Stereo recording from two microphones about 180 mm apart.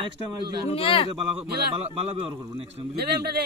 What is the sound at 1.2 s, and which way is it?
A man's voice, 30° right (ahead or behind).